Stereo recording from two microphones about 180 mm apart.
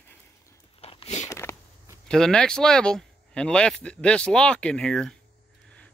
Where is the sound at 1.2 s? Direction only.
15° left (ahead or behind).